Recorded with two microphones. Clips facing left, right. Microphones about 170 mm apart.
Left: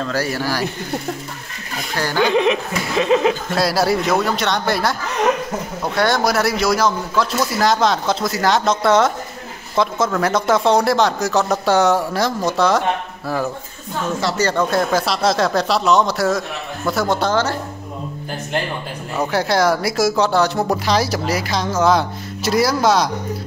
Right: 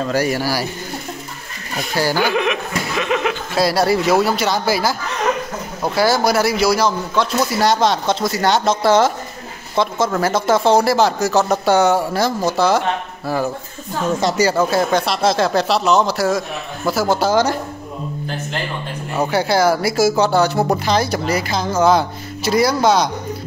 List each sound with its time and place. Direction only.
0.0 s speech: 15° right (ahead or behind)
2.1 s speech: 25° left (ahead or behind)
3.5 s speech: centre (ahead or behind)
5.9 s speech: 5° right (ahead or behind)
14.2 s speech: 10° right (ahead or behind)
19.1 s speech: centre (ahead or behind)